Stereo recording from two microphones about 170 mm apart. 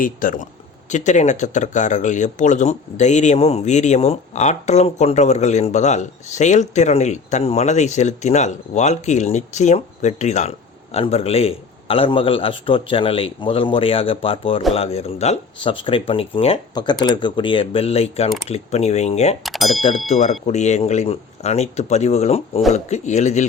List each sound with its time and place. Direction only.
0.0 s a man's voice: 55° left (ahead or behind)
19.4 s speech: centre (ahead or behind)
20.1 s a man's voice: 40° left (ahead or behind)